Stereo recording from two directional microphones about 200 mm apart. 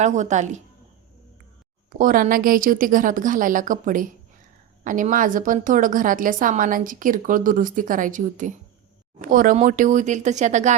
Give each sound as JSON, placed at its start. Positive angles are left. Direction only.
{"t": 0.0, "sound": "a woman's voice", "side_deg": -35}
{"t": 2.0, "sound": "a woman's voice", "side_deg": -40}